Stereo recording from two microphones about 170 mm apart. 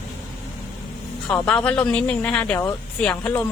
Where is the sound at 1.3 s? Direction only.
5° left (ahead or behind).